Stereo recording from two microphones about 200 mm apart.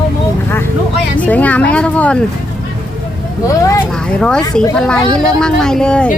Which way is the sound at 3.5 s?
15° left (ahead or behind).